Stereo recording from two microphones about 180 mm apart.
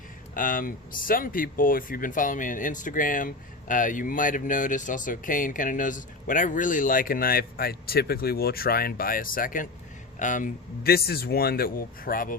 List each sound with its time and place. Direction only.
0.3 s speech: 50° left (ahead or behind)